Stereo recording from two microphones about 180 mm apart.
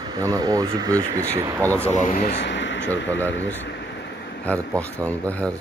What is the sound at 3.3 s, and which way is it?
Air conditioning, 80° left.